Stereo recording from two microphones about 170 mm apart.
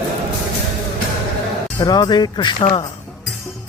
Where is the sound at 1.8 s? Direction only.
25° left (ahead or behind).